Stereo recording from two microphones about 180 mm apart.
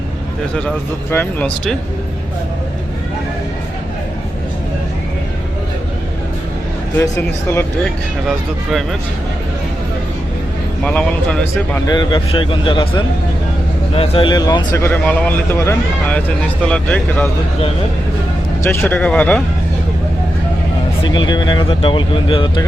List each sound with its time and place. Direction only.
1.1 s a man's voice: 10° left (ahead or behind)
6.9 s a man's voice: 15° left (ahead or behind)
10.8 s a man's voice: 5° left (ahead or behind)
11.9 s a man's voice: 25° left (ahead or behind); by 17.2 s 5° left (ahead or behind)
18.6 s a man's voice: 15° left (ahead or behind)
21.0 s speech: 25° left (ahead or behind)